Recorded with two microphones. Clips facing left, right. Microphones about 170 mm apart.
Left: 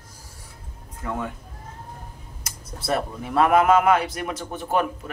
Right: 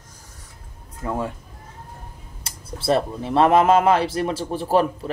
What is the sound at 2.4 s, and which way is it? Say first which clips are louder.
Speech: right 5 dB; 30° right (ahead or behind).